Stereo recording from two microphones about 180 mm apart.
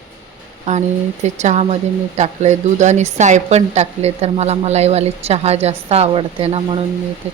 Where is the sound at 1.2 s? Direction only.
40° right (ahead or behind).